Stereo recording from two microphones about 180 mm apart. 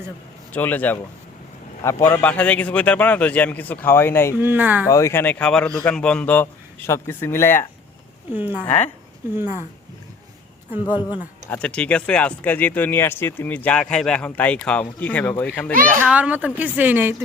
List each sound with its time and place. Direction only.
0.5 s speech: 10° left (ahead or behind)
4.4 s a woman's voice: 10° right (ahead or behind)
4.9 s speech: 15° left (ahead or behind)
8.3 s a woman's voice: 10° right (ahead or behind)
10.8 s speech: 25° left (ahead or behind)
11.5 s speech: 5° left (ahead or behind)
16.0 s a woman's voice: 5° right (ahead or behind)